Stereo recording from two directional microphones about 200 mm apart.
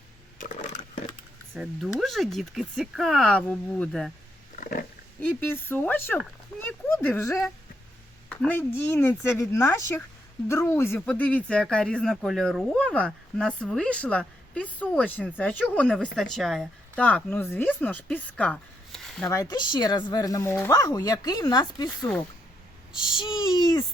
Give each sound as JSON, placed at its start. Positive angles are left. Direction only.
{"t": 0.3, "sound": "a sound", "side_deg": 40}
{"t": 1.5, "sound": "speech", "side_deg": -5}
{"t": 4.5, "sound": "wild animals", "side_deg": 45}
{"t": 5.2, "sound": "a woman's voice", "side_deg": 10}
{"t": 19.3, "sound": "speech", "side_deg": 20}
{"t": 22.9, "sound": "a sound", "side_deg": -5}